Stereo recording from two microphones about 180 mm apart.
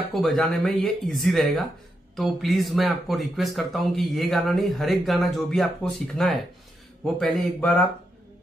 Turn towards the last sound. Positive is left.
turn(degrees=0)  # may be behind; listen again after turning